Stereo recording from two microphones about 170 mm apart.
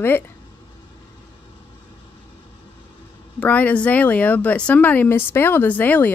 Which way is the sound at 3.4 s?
10° left (ahead or behind).